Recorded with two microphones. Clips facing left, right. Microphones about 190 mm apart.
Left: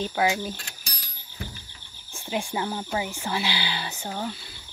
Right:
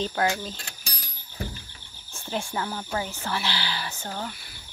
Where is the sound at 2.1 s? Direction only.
15° left (ahead or behind).